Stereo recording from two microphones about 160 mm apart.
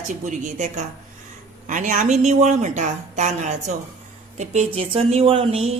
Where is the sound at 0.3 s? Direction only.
50° right (ahead or behind).